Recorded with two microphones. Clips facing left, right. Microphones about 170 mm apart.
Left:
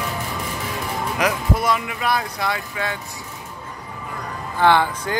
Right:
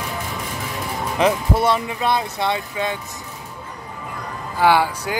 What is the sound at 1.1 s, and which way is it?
Speech, 30° right (ahead or behind).